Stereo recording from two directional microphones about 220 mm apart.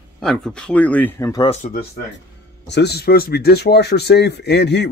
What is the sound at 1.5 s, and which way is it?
Speech, 40° left (ahead or behind).